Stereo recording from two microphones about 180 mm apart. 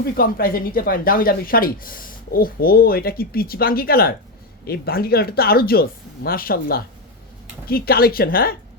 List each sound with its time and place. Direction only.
0.0 s speech: 55° left (ahead or behind)